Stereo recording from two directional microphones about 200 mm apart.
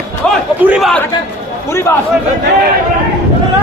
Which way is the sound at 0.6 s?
5° right (ahead or behind).